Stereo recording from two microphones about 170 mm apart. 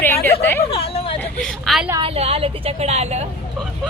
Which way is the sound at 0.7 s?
35° left (ahead or behind).